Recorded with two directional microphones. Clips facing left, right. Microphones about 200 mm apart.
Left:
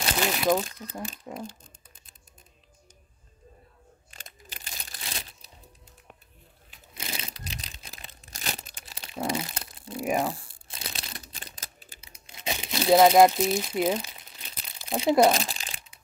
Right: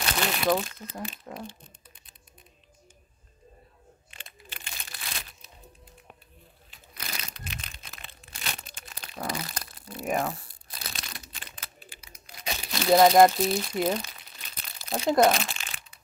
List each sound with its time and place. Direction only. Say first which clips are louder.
0.2 s speech: left 1 dB; 15° left (ahead or behind)
4.1 s crumpling: even; 40° left (ahead or behind)
6.9 s crumpling: left 2 dB; 25° left (ahead or behind)
9.0 s crunch: left 4 dB; 25° left (ahead or behind)
9.5 s tearing: left 1 dB; 25° left (ahead or behind)
9.9 s crumpling: left 2 dB; 15° left (ahead or behind)
10.5 s crumpling: left 2 dB; 25° left (ahead or behind)
12.0 s crumpling: left 3 dB; 25° left (ahead or behind)
12.8 s speech: left 1 dB; 5° left (ahead or behind)
15.3 s crumpling: left 1 dB; 35° left (ahead or behind)